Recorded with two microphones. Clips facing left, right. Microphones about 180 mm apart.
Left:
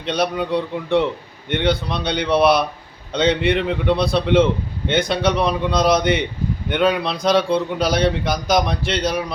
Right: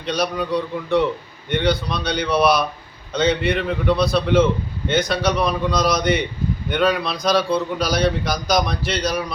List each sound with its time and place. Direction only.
0.1 s a man's voice: 25° left (ahead or behind)